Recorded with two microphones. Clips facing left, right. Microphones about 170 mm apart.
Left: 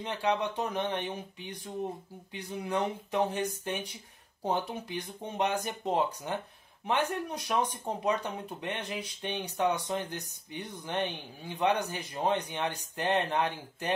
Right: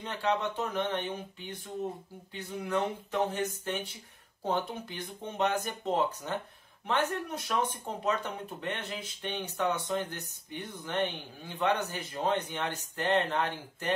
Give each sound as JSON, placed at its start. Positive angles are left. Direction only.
{"t": 0.0, "sound": "speech", "side_deg": 15}